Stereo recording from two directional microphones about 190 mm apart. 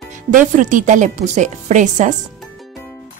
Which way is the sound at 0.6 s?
40° right (ahead or behind).